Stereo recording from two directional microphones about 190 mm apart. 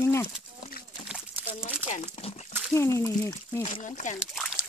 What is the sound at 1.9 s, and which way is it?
Speech, 35° left (ahead or behind).